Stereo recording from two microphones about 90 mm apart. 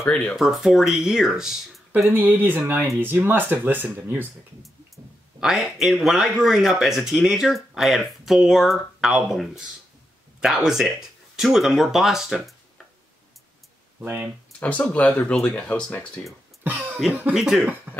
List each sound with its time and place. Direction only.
0.1 s speech: 15° left (ahead or behind)
0.4 s speech: centre (ahead or behind)
2.0 s speech: 20° right (ahead or behind)
4.6 s speech: centre (ahead or behind)
13.9 s speech: 20° right (ahead or behind)
14.6 s speech: 15° left (ahead or behind)
16.6 s speech: 20° right (ahead or behind)
17.3 s speech: 5° right (ahead or behind)
17.9 s throat clearing: 20° right (ahead or behind)